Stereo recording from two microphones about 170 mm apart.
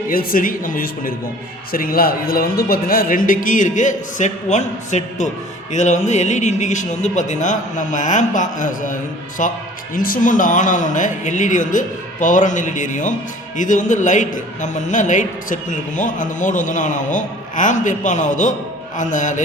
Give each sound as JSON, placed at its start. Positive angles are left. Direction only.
{"t": 0.1, "sound": "a man's voice", "side_deg": 55}